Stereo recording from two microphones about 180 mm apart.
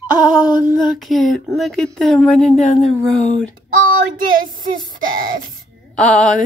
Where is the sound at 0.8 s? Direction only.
Centre (ahead or behind).